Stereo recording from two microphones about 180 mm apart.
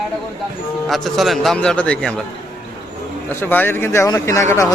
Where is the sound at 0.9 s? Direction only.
Centre (ahead or behind).